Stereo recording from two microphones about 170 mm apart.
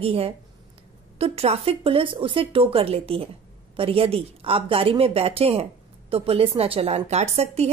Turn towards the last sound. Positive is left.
turn(degrees=-40)  # may be behind; listen again after turning